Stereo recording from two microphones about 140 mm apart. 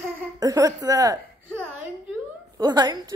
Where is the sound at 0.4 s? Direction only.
25° right (ahead or behind).